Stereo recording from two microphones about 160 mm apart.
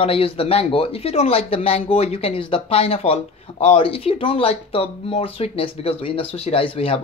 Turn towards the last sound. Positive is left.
turn(degrees=35)  # may be behind; listen again after turning